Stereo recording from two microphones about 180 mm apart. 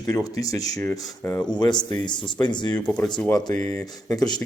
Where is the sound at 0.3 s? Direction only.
20° left (ahead or behind).